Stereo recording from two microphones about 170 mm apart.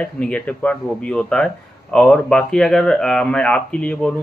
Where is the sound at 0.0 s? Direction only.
5° left (ahead or behind).